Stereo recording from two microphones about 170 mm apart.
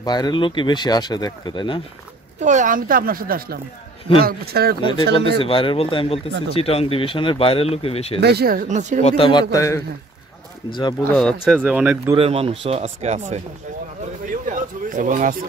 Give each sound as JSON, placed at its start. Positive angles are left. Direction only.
{"t": 0.0, "sound": "speech", "side_deg": 25}
{"t": 2.4, "sound": "speech", "side_deg": -50}
{"t": 4.8, "sound": "speech", "side_deg": 30}
{"t": 8.2, "sound": "speech", "side_deg": -70}
{"t": 9.0, "sound": "speech", "side_deg": 35}
{"t": 11.1, "sound": "speech", "side_deg": 5}
{"t": 11.6, "sound": "speech", "side_deg": -5}
{"t": 12.2, "sound": "speech", "side_deg": -35}
{"t": 14.3, "sound": "a sound", "side_deg": -50}